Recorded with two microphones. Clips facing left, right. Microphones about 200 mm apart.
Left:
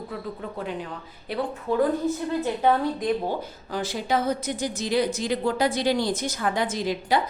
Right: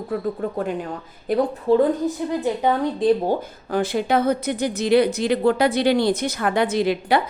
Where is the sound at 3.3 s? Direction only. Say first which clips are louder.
Right 7 dB; 55° right (ahead or behind).